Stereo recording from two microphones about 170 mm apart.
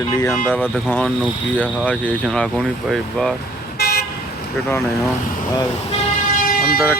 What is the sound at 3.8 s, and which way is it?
Toot, 65° left (ahead or behind).